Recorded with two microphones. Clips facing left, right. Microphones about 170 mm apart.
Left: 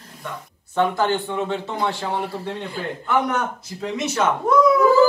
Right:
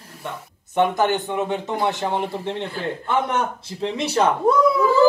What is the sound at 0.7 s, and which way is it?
A man's voice, 20° right (ahead or behind).